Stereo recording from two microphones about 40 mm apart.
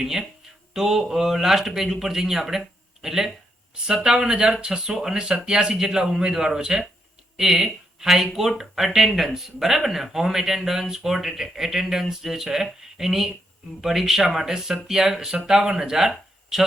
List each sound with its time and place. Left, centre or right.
0.0 s speech: centre
0.7 s a sound: centre
1.0 s speech: centre